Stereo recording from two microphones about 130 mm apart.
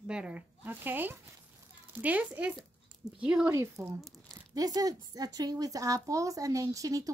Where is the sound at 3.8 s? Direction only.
25° right (ahead or behind).